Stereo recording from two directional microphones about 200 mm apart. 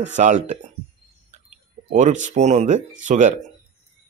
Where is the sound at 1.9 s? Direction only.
35° right (ahead or behind).